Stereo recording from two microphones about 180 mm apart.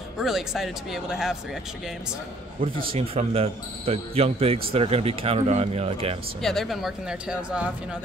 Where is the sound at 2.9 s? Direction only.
35° right (ahead or behind).